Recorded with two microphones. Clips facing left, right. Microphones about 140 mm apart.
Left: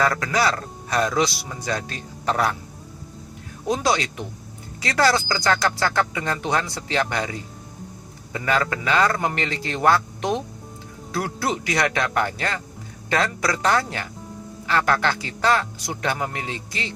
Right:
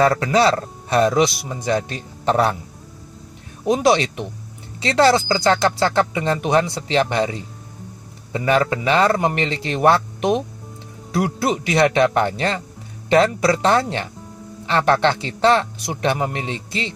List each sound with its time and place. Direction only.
0.0 s speech: 30° right (ahead or behind)
3.6 s speech: 20° right (ahead or behind)